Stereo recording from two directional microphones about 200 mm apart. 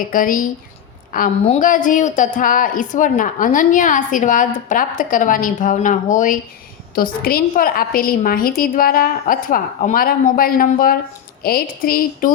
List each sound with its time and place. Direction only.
0.1 s a woman's voice: 45° left (ahead or behind)